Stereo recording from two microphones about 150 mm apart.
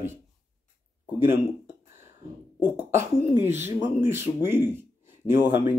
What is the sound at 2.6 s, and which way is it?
Speech, 15° right (ahead or behind).